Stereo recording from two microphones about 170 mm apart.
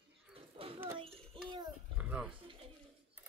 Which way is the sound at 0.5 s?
35° right (ahead or behind).